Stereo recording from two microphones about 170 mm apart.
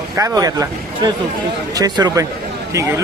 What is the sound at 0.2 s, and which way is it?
Speech, 20° right (ahead or behind).